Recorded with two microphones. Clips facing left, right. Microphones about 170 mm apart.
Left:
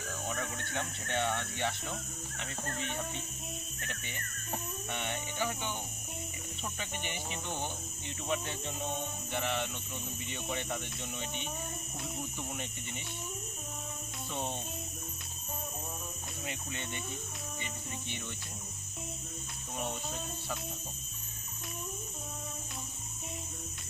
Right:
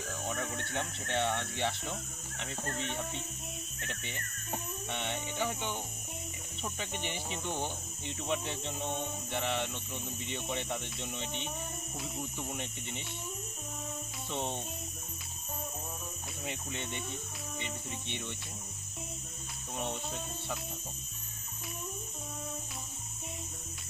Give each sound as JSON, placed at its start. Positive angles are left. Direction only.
{"t": 0.6, "sound": "speech", "side_deg": -30}
{"t": 1.1, "sound": "speech", "side_deg": 0}
{"t": 4.9, "sound": "speech", "side_deg": 0}
{"t": 6.9, "sound": "speech", "side_deg": 5}
{"t": 14.3, "sound": "speech", "side_deg": 0}
{"t": 16.4, "sound": "speech", "side_deg": 0}